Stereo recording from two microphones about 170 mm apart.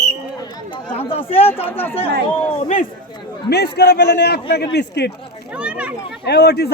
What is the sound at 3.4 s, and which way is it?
A man's voice, 75° left (ahead or behind).